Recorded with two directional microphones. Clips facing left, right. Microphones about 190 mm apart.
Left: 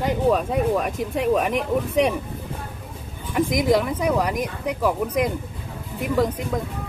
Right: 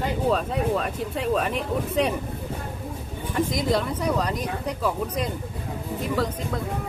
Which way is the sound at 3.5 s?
15° left (ahead or behind).